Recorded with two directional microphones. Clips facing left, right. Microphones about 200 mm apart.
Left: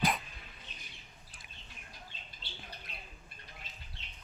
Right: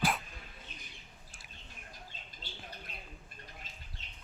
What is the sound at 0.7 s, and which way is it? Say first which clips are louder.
Bird: right 3 dB; 45° right (ahead or behind).